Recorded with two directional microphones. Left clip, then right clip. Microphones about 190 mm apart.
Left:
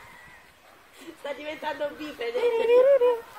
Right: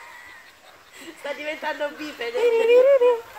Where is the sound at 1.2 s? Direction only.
20° right (ahead or behind).